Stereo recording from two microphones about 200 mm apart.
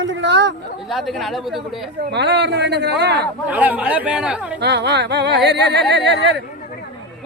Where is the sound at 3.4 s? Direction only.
10° right (ahead or behind).